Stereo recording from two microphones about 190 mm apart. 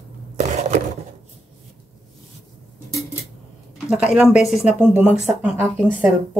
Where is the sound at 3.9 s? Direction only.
5° right (ahead or behind).